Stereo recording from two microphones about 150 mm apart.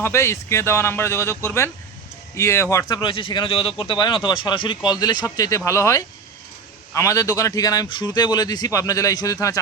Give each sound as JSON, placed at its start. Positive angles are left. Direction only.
{"t": 0.0, "sound": "speech", "side_deg": 20}